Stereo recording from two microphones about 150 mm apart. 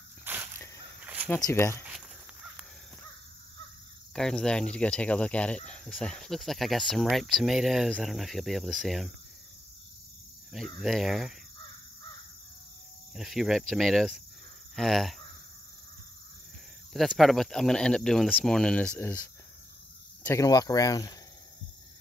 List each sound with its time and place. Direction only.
0.2 s a sound: 15° right (ahead or behind)
1.3 s speech: 15° left (ahead or behind)
4.1 s speech: 5° left (ahead or behind)
10.8 s speech: centre (ahead or behind)
13.1 s speech: centre (ahead or behind)
16.9 s speech: centre (ahead or behind)
20.2 s speech: 20° left (ahead or behind)